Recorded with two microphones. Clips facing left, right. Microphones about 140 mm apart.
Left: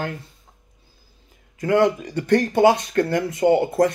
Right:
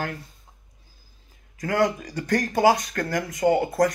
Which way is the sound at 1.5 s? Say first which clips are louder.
Left 5 dB; 25° left (ahead or behind).